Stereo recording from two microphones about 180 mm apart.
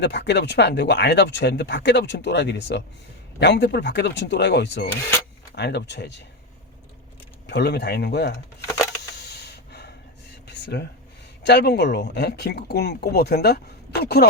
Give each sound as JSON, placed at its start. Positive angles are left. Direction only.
{"t": 0.0, "sound": "speech", "side_deg": 70}
{"t": 7.4, "sound": "speech", "side_deg": 65}
{"t": 9.1, "sound": "snort", "side_deg": 65}
{"t": 10.5, "sound": "a sound", "side_deg": 65}
{"t": 11.4, "sound": "speech", "side_deg": 65}